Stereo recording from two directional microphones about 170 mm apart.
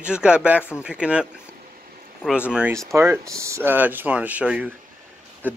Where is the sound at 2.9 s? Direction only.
15° right (ahead or behind).